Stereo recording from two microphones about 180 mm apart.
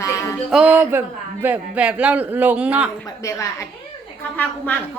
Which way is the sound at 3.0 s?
15° left (ahead or behind).